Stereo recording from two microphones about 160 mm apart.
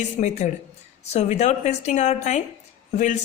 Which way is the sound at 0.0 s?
50° left (ahead or behind).